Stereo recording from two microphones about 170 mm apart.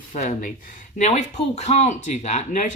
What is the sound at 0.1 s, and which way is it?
Speech, 50° left (ahead or behind).